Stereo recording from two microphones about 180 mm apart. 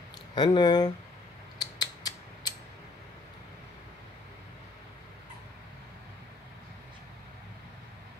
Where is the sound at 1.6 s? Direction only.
20° left (ahead or behind).